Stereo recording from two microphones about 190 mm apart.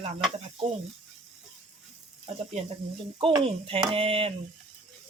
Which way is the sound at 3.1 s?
30° right (ahead or behind).